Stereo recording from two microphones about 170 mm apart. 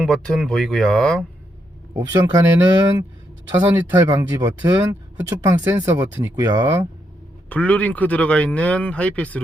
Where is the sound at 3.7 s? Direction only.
15° right (ahead or behind).